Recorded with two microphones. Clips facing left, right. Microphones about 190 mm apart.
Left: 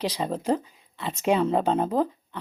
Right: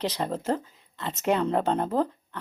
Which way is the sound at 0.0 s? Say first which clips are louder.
Left 1 dB; 10° left (ahead or behind).